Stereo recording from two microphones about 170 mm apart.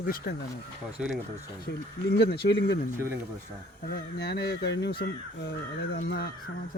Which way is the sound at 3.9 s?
75° left (ahead or behind).